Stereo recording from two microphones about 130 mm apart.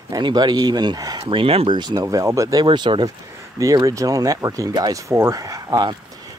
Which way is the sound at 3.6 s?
25° right (ahead or behind).